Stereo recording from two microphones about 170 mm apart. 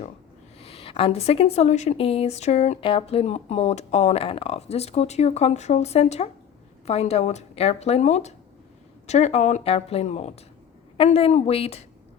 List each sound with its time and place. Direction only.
0.6 s a woman's voice: 35° left (ahead or behind)